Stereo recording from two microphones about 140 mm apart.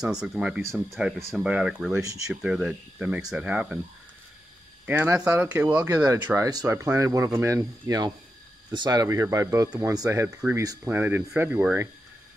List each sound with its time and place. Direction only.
0.0 s speech: 5° right (ahead or behind)
2.0 s speech: 25° right (ahead or behind)
2.4 s speech: 5° right (ahead or behind)
4.8 s speech: 10° right (ahead or behind)
6.2 s speech: 20° right (ahead or behind)
10.9 s speech: 15° right (ahead or behind)